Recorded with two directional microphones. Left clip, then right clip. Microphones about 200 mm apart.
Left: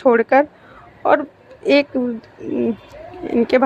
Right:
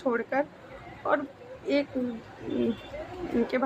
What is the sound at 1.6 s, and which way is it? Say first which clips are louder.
Speech: left 13 dB; 40° left (ahead or behind).